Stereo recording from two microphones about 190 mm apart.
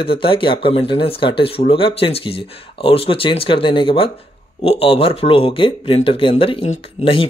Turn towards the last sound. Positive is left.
turn(degrees=30)  # may be behind; listen again after turning